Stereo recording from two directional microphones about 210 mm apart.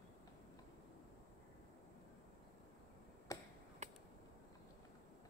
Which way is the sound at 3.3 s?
15° left (ahead or behind).